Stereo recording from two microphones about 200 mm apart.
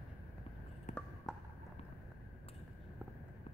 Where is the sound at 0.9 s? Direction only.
40° left (ahead or behind).